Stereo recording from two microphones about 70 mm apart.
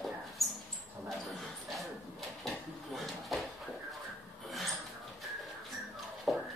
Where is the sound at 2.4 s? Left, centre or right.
Centre.